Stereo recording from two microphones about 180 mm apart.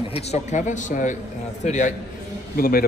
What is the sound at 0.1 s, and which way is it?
Speech, 40° left (ahead or behind).